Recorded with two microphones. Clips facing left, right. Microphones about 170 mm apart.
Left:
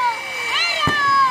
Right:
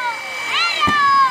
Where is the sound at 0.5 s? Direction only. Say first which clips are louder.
Right 2 dB; 40° left (ahead or behind).